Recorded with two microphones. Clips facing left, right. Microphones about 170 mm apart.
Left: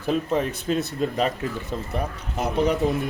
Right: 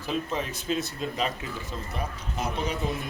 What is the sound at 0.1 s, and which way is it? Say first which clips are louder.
A man's voice: left 5 dB; 50° left (ahead or behind).